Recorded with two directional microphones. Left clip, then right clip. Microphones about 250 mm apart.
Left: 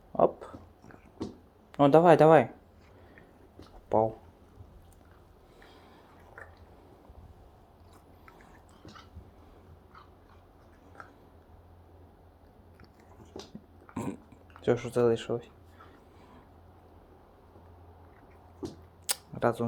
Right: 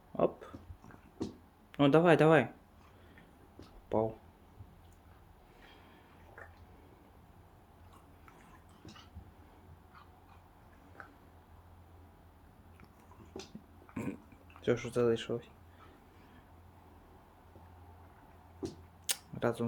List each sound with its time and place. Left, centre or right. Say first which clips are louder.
0.2 s a sound: left 7 dB; centre
1.7 s speech: left 6 dB; centre
3.8 s speech: left 7 dB; centre
13.9 s burping: left 4 dB; centre
14.6 s speech: left 5 dB; centre
19.0 s camera: left 5 dB; centre